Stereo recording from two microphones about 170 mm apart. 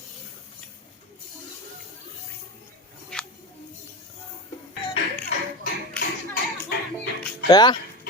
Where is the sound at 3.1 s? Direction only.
5° left (ahead or behind).